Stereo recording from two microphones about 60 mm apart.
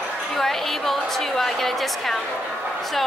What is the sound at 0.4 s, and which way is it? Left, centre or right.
A woman's voice, centre.